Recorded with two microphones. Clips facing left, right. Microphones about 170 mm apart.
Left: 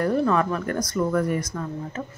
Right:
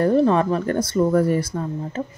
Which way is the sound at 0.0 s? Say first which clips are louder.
Right 5 dB; 30° right (ahead or behind).